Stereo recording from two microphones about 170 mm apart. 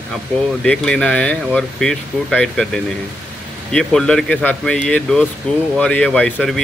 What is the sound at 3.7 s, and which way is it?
Speech, 5° left (ahead or behind).